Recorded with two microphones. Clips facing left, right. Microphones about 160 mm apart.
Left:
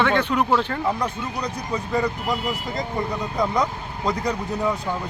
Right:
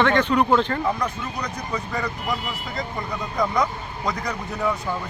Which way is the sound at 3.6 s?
30° left (ahead or behind).